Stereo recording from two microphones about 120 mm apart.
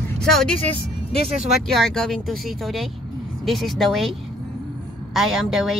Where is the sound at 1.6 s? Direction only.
Centre (ahead or behind).